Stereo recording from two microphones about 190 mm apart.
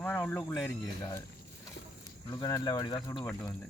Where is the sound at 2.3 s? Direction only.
20° left (ahead or behind).